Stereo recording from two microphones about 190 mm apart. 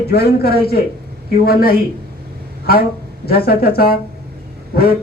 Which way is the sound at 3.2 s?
55° left (ahead or behind).